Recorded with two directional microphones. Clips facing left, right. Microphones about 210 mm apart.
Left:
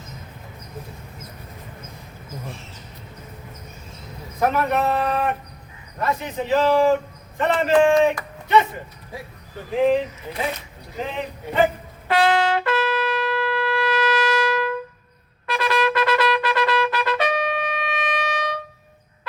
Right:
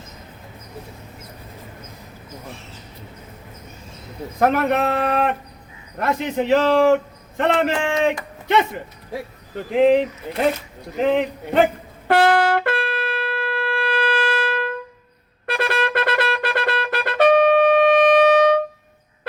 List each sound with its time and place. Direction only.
4.4 s a man's voice: 75° right (ahead or behind)
9.7 s a man's voice: 65° right (ahead or behind)
12.0 s shofar: 60° right (ahead or behind)
15.4 s music: 55° right (ahead or behind)